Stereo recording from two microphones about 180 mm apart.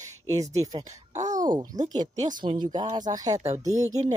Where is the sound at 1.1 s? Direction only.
40° right (ahead or behind).